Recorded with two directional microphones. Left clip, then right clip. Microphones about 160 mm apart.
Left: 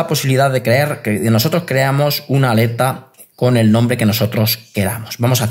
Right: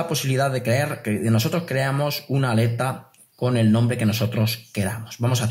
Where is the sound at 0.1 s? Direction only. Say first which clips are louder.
Left 8 dB; 25° left (ahead or behind).